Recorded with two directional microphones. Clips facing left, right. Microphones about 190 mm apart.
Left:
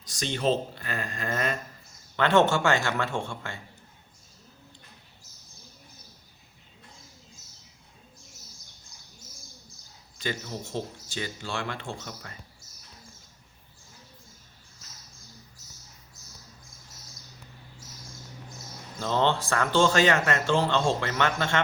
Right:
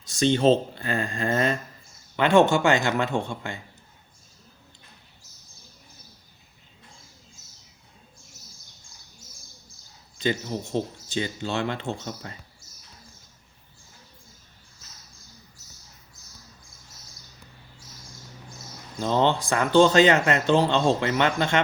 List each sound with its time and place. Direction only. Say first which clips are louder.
0.0 s speech: right 8 dB; 25° right (ahead or behind)
2.1 s speech: right 3 dB; 15° right (ahead or behind)
10.2 s speech: right 7 dB; 20° right (ahead or behind)
18.9 s speech: right 3 dB; 15° right (ahead or behind)